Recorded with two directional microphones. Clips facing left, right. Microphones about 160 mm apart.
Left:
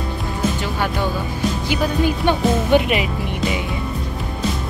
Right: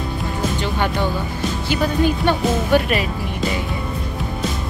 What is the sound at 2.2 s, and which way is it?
Speech, 15° left (ahead or behind).